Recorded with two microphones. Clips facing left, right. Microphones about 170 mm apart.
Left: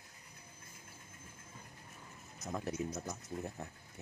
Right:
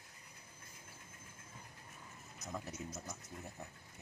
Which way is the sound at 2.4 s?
65° left (ahead or behind).